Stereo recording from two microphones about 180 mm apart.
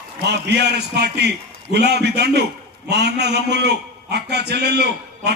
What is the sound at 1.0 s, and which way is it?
A man's voice, 65° right (ahead or behind).